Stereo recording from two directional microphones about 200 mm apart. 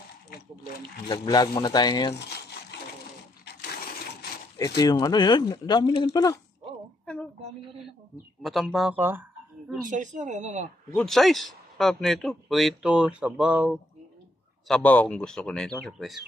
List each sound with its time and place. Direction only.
1.0 s speech: 20° left (ahead or behind)
4.6 s speech: 20° left (ahead or behind)
7.1 s a man's voice: 5° left (ahead or behind)
8.4 s a man's voice: centre (ahead or behind)
9.8 s speech: 40° right (ahead or behind)
10.9 s a man's voice: 5° left (ahead or behind)
14.7 s a man's voice: 5° left (ahead or behind)